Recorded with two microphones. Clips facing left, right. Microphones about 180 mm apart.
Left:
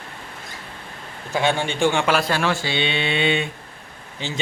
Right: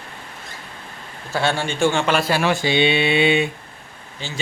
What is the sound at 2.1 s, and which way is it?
Speech, 5° right (ahead or behind).